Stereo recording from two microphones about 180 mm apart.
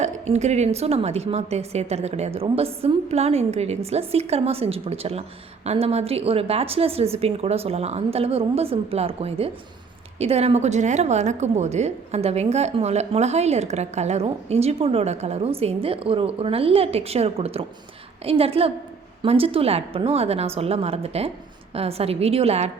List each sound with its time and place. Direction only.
0.0 s a woman's voice: 40° right (ahead or behind)